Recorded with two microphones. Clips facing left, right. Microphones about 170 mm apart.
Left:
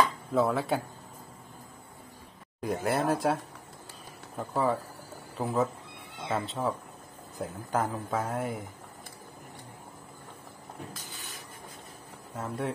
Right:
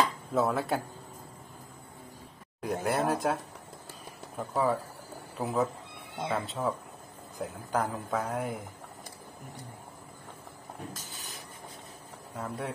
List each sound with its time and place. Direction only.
0.3 s speech: centre (ahead or behind)
2.6 s speech: centre (ahead or behind)
4.4 s speech: centre (ahead or behind)
12.4 s speech: centre (ahead or behind)